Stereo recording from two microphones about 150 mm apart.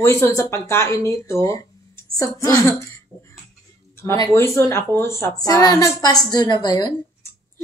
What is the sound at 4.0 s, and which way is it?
A woman's voice, 15° left (ahead or behind).